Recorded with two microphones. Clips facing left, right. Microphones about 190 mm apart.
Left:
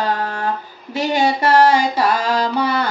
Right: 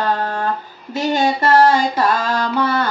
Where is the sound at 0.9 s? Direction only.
10° left (ahead or behind).